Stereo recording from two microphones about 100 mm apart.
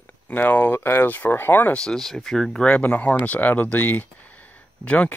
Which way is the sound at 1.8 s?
5° left (ahead or behind).